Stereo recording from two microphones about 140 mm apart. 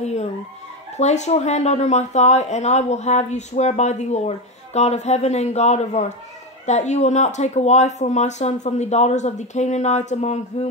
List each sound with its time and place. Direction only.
0.0 s speech: 50° left (ahead or behind)